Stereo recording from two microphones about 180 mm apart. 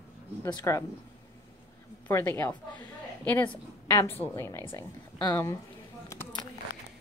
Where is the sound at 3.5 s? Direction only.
20° left (ahead or behind).